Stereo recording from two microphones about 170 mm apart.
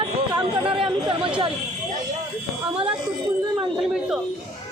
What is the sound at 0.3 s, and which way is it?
Chatter, 30° right (ahead or behind).